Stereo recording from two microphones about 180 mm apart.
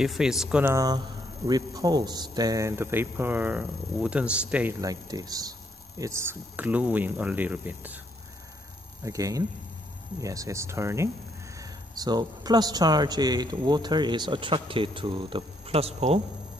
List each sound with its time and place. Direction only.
0.0 s speech: centre (ahead or behind)
4.8 s speech: 20° right (ahead or behind)
9.0 s a man's voice: 20° right (ahead or behind); by 16.2 s 35° right (ahead or behind)